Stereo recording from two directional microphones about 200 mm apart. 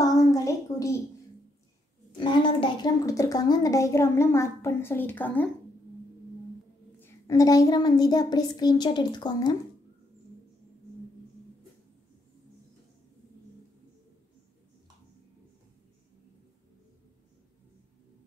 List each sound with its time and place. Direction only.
0.0 s a sound: 15° left (ahead or behind)
2.1 s a woman's voice: 25° left (ahead or behind)
7.0 s a child's voice: 15° left (ahead or behind)